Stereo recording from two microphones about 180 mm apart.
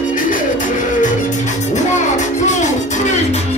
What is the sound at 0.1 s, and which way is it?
Music, 45° left (ahead or behind).